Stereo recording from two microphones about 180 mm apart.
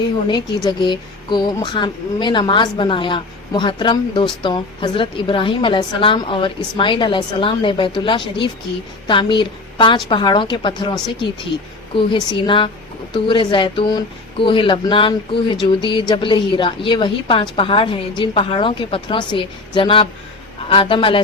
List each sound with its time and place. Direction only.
0.3 s a woman's voice: 25° left (ahead or behind)
11.9 s speech: 30° left (ahead or behind)